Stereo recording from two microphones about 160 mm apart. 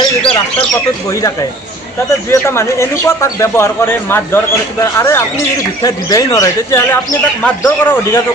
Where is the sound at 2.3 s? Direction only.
15° left (ahead or behind).